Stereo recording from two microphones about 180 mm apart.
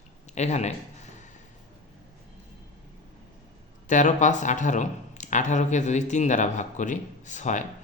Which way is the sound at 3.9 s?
45° left (ahead or behind).